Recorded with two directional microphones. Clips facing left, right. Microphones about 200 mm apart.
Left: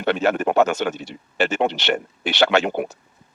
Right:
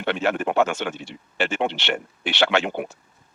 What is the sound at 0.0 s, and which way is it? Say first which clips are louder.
Speech: left 4 dB; 40° left (ahead or behind).